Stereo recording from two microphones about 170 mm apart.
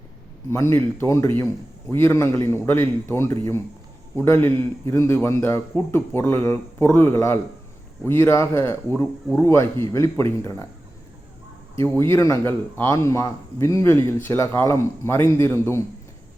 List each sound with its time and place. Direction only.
0.5 s speech: 15° left (ahead or behind)
11.8 s speech: 15° left (ahead or behind)